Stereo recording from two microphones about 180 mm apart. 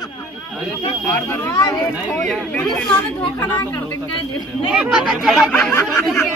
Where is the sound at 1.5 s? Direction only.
20° left (ahead or behind).